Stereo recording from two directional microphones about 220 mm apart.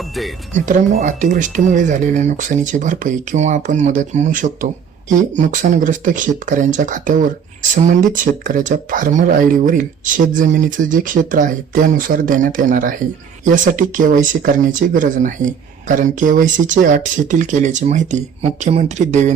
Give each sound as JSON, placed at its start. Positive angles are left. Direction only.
{"t": 0.5, "sound": "speech", "side_deg": -35}